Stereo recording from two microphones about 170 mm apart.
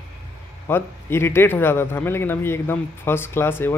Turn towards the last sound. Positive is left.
turn(degrees=15)  # may be behind; listen again after turning